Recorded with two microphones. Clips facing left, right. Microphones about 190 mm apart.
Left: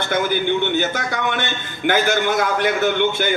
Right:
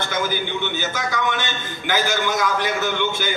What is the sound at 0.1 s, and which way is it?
A man's voice, 55° left (ahead or behind).